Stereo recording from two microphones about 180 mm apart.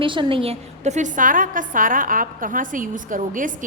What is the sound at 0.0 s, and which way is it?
A woman's voice, 30° right (ahead or behind).